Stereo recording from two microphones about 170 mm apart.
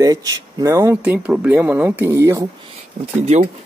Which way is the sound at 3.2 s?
45° right (ahead or behind).